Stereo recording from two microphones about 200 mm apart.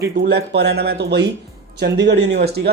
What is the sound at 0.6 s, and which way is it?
Speech, 55° right (ahead or behind).